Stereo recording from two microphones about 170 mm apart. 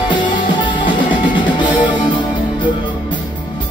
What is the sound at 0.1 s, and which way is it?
Music, 30° left (ahead or behind).